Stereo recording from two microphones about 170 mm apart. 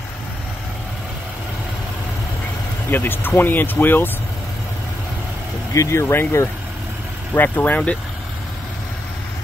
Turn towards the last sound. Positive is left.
turn(degrees=10)  # may be behind; listen again after turning